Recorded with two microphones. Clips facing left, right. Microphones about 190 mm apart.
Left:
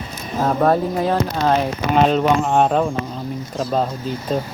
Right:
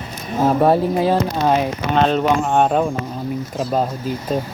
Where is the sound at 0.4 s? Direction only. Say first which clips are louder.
Right 2 dB; 10° right (ahead or behind).